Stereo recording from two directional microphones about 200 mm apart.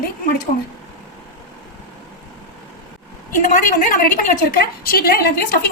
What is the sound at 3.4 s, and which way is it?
A woman's voice, 40° left (ahead or behind).